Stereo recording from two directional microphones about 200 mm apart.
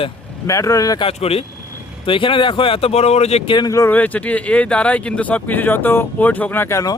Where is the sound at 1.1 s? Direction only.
30° left (ahead or behind).